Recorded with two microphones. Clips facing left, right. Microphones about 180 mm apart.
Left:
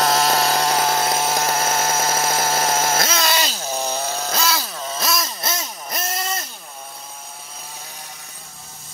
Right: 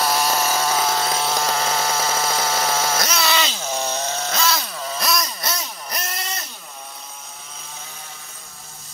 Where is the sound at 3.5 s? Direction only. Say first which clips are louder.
Even; 10° left (ahead or behind).